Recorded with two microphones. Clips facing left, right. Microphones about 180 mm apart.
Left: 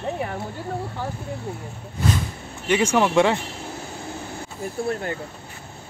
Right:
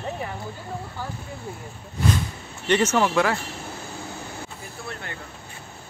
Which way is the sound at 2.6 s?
10° left (ahead or behind).